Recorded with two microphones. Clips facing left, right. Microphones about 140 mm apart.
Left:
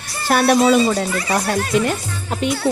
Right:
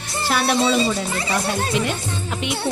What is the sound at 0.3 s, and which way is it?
Speech, 50° left (ahead or behind).